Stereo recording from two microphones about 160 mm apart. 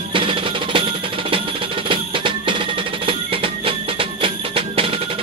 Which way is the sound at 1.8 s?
30° right (ahead or behind).